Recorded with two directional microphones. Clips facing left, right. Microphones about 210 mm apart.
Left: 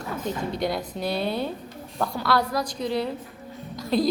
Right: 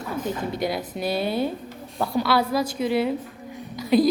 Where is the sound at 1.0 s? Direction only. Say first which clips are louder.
Right 3 dB; 5° right (ahead or behind).